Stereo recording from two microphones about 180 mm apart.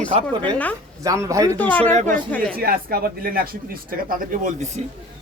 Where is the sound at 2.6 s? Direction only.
55° right (ahead or behind).